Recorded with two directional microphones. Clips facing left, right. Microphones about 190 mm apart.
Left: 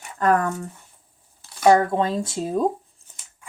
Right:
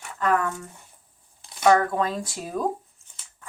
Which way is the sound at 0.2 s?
40° left (ahead or behind).